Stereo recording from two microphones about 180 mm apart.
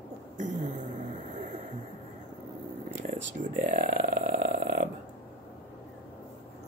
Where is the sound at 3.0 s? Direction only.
45° right (ahead or behind).